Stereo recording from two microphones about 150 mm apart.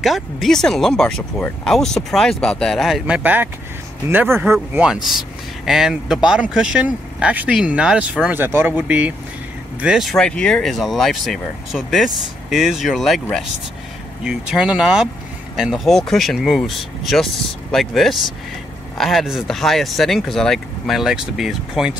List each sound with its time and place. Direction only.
0.0 s speech: centre (ahead or behind)